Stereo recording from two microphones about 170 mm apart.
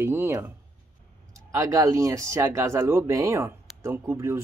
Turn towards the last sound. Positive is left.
turn(degrees=-15)  # may be behind; listen again after turning